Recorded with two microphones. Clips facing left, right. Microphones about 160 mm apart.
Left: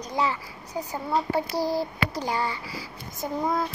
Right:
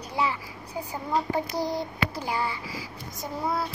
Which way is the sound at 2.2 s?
10° right (ahead or behind).